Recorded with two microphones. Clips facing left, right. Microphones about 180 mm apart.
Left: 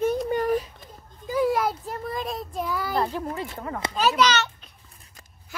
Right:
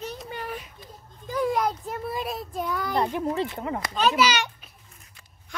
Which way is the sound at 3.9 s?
5° left (ahead or behind).